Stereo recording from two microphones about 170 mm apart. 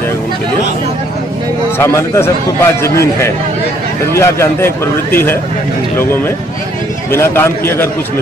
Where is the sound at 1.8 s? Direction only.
15° left (ahead or behind).